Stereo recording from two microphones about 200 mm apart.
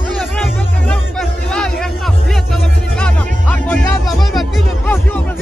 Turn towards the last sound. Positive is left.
turn(degrees=0)  # may be behind; listen again after turning